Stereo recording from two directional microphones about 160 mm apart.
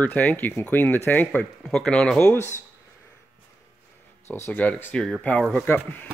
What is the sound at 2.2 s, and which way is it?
Speech, 15° left (ahead or behind).